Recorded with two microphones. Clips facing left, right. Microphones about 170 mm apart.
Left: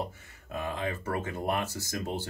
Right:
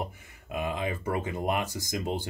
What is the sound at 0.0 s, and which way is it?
Speech, 15° right (ahead or behind).